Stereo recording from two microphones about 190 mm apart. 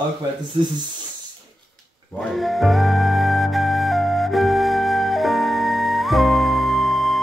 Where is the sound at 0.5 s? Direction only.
25° right (ahead or behind).